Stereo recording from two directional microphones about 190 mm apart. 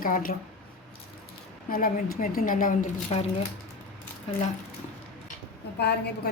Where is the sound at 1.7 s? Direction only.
50° left (ahead or behind).